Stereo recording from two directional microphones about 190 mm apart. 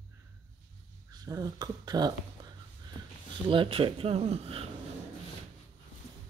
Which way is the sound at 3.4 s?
25° right (ahead or behind).